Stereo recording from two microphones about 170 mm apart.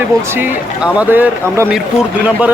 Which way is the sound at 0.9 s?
10° right (ahead or behind).